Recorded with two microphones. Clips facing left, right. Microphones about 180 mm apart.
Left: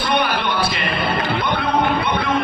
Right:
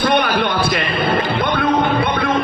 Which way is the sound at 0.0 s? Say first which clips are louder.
Right 4 dB; 55° right (ahead or behind).